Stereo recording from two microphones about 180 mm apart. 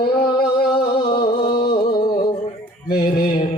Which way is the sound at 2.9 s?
55° left (ahead or behind).